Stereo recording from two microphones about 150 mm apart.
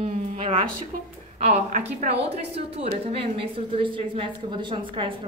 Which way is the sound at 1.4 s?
45° right (ahead or behind).